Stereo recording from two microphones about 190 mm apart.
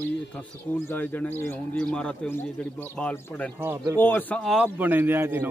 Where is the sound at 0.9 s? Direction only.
10° left (ahead or behind).